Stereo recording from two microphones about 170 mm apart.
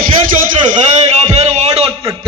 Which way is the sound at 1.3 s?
40° right (ahead or behind).